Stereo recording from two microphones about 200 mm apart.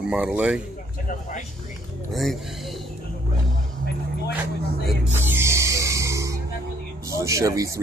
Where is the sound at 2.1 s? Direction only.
Centre (ahead or behind).